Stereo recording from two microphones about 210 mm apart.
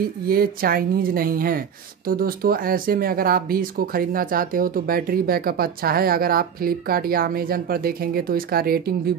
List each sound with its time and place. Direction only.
0.3 s speech: 45° right (ahead or behind)